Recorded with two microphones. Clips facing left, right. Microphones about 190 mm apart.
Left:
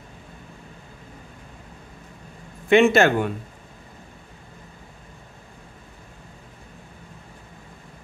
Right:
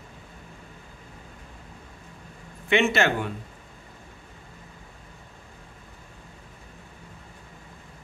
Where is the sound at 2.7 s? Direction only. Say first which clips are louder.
Left 7 dB; 45° left (ahead or behind).